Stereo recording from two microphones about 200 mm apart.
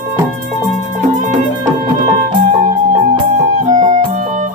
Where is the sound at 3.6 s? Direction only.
35° right (ahead or behind).